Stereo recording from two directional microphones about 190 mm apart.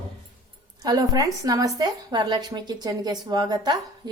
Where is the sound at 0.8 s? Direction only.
20° right (ahead or behind).